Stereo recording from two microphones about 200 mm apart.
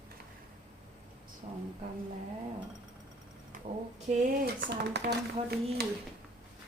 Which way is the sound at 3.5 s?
40° right (ahead or behind).